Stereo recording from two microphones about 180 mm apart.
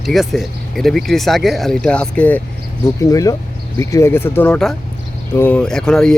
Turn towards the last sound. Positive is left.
turn(degrees=5)  # may be behind; listen again after turning